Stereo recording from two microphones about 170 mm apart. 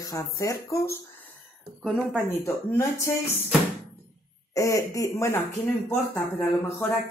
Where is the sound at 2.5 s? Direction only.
15° left (ahead or behind).